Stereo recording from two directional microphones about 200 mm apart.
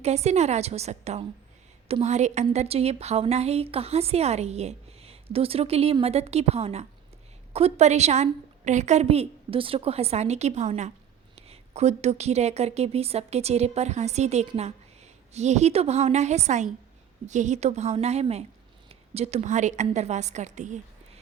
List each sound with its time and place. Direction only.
0.0 s a woman's voice: 30° right (ahead or behind)